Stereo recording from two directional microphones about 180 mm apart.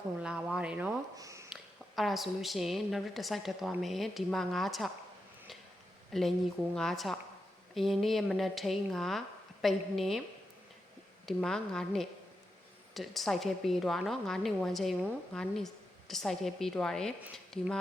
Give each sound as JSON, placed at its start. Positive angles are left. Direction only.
{"t": 0.2, "sound": "speech", "side_deg": -5}
{"t": 1.1, "sound": "speech", "side_deg": -15}
{"t": 2.0, "sound": "a woman's voice", "side_deg": 0}
{"t": 6.1, "sound": "a woman's voice", "side_deg": 0}
{"t": 11.3, "sound": "a woman's voice", "side_deg": 0}